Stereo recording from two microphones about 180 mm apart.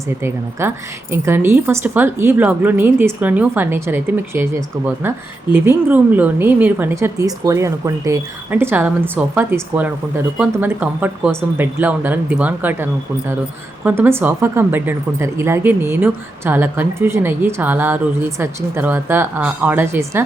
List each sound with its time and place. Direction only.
0.2 s speech: 15° right (ahead or behind)